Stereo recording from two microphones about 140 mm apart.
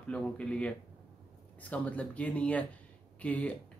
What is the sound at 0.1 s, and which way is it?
Speech, 10° left (ahead or behind).